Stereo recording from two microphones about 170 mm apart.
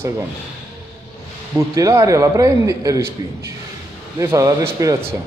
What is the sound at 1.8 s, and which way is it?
A man's voice, 20° right (ahead or behind).